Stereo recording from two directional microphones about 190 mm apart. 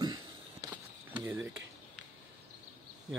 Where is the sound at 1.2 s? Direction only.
5° right (ahead or behind).